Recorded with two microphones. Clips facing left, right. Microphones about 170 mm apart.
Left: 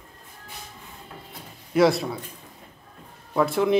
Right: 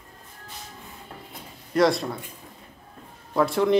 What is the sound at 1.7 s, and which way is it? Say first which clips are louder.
Speech: left 1 dB; 5° left (ahead or behind).